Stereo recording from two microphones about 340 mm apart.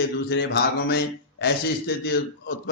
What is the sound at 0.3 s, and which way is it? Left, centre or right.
A man's voice, left.